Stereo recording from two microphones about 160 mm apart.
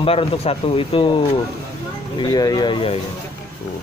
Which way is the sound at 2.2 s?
25° left (ahead or behind).